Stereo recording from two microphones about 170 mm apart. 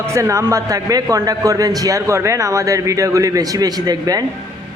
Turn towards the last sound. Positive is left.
turn(degrees=-20)  # may be behind; listen again after turning